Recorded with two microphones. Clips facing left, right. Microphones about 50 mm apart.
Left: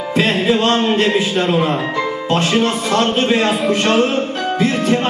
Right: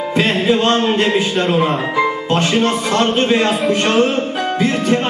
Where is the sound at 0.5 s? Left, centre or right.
Right.